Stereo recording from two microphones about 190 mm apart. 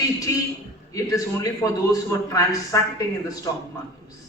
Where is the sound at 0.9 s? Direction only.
20° left (ahead or behind).